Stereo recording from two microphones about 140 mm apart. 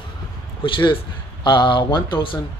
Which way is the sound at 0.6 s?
35° left (ahead or behind).